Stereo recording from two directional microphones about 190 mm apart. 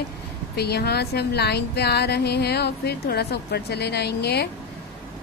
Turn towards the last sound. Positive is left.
turn(degrees=60)  # may be behind; listen again after turning